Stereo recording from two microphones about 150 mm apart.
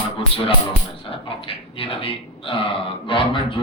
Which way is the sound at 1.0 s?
40° left (ahead or behind).